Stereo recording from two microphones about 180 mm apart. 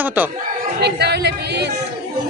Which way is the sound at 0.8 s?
65° right (ahead or behind).